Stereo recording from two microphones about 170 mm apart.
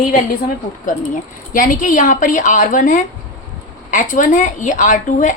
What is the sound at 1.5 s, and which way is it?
A woman's voice, 50° left (ahead or behind).